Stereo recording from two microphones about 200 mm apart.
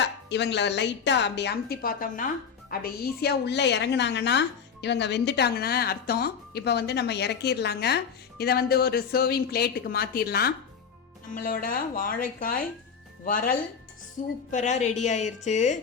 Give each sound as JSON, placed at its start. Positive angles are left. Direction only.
{"t": 0.0, "sound": "a woman's voice", "side_deg": 60}